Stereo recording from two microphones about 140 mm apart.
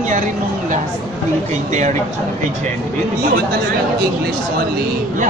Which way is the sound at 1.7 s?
60° right (ahead or behind).